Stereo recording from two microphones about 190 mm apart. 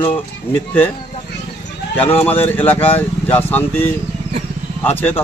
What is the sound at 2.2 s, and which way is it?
Speech, 10° left (ahead or behind).